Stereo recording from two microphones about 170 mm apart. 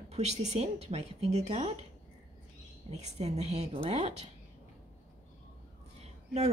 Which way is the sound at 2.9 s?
40° right (ahead or behind).